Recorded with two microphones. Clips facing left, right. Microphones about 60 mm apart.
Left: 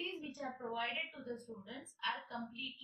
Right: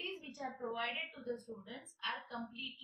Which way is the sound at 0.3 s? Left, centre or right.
Centre.